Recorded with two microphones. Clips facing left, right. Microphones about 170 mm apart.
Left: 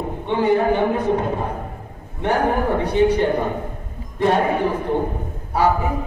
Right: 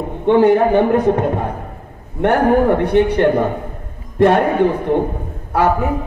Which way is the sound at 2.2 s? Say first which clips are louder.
Right 6 dB; 60° right (ahead or behind).